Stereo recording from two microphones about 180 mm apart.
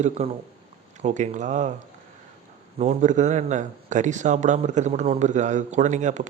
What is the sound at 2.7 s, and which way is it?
Speech, 40° right (ahead or behind).